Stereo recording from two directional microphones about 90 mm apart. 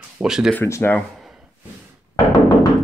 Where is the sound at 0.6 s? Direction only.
30° left (ahead or behind).